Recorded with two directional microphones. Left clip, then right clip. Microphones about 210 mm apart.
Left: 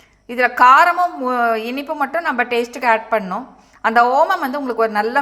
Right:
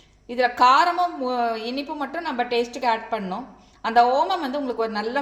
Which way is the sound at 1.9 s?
15° left (ahead or behind).